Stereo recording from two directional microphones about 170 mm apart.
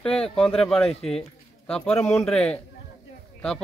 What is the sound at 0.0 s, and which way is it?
Speech, 5° left (ahead or behind).